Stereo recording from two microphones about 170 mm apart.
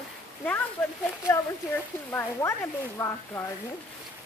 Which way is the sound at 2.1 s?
15° left (ahead or behind).